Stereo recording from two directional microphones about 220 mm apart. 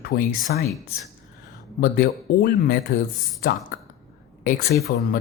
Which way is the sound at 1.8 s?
45° left (ahead or behind).